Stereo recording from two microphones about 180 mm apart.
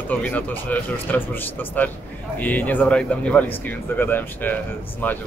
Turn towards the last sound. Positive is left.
turn(degrees=10)  # may be behind; listen again after turning